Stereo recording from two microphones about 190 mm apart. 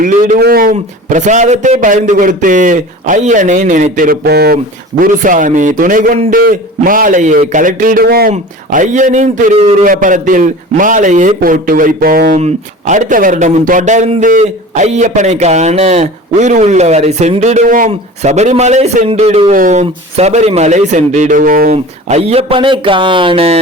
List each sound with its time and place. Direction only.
0.0 s a man's voice: 45° right (ahead or behind)
8.3 s a man's voice: 40° right (ahead or behind)